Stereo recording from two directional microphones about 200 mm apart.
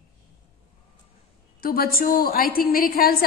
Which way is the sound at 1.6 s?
45° left (ahead or behind).